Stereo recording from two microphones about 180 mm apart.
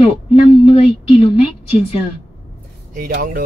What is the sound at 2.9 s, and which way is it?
Speech, 50° right (ahead or behind).